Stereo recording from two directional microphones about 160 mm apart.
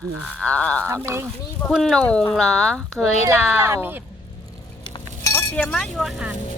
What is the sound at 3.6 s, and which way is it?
Speech, 15° right (ahead or behind).